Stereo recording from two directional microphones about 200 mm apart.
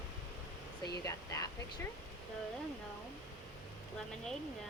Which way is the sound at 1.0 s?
15° left (ahead or behind).